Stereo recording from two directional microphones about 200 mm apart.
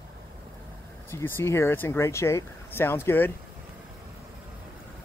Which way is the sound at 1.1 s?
10° left (ahead or behind).